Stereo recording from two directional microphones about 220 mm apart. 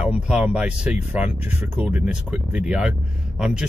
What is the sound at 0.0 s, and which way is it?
Speech, 5° right (ahead or behind).